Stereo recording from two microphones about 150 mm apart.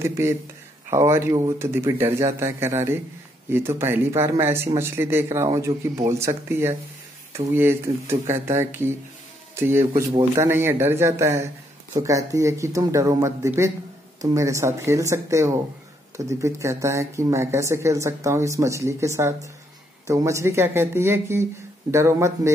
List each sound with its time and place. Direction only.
0.0 s speech: 20° right (ahead or behind)